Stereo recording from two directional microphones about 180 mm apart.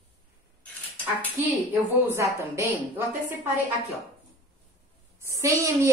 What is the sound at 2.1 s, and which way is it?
A woman's voice, 15° right (ahead or behind).